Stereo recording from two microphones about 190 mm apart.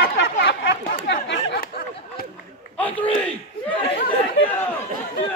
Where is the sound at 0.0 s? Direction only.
55° left (ahead or behind).